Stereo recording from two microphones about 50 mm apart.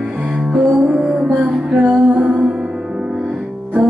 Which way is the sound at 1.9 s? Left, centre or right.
Right.